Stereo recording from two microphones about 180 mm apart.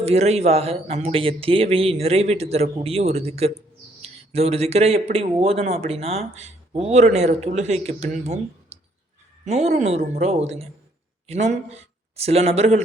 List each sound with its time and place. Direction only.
0.0 s speech: 35° right (ahead or behind)